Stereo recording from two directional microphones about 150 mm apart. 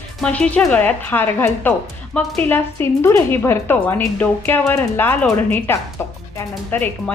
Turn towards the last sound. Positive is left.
turn(degrees=10)  # may be behind; listen again after turning